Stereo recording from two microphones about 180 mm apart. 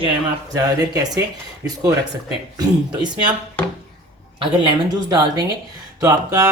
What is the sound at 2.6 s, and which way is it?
Speech, 25° right (ahead or behind).